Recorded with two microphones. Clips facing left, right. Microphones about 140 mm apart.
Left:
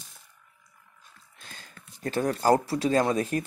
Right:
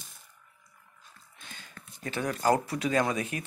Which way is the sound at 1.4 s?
40° left (ahead or behind).